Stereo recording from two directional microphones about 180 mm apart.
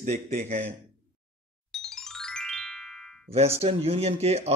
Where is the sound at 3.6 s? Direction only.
35° right (ahead or behind).